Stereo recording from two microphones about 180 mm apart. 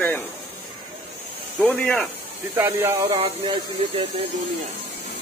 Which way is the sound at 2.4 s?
15° right (ahead or behind).